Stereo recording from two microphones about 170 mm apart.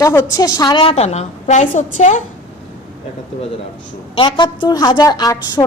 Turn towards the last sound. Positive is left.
turn(degrees=25)  # may be behind; listen again after turning